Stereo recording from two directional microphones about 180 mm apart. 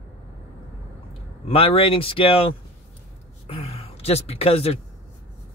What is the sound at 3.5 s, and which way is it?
Speech, 35° left (ahead or behind).